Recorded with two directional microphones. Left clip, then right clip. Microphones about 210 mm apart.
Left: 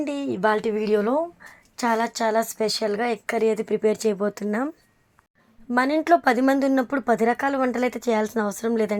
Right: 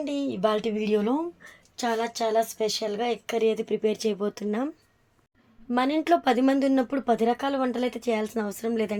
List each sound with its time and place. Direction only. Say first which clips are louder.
0.4 s speech: left 4 dB; 15° left (ahead or behind)
1.8 s speech: left 4 dB; 25° left (ahead or behind)
5.7 s speech: left 4 dB; 15° left (ahead or behind)